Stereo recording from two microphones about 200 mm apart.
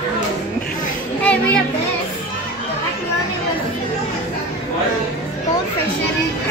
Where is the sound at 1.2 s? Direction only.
10° left (ahead or behind).